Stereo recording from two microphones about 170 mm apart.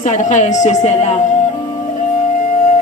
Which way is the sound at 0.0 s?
45° left (ahead or behind).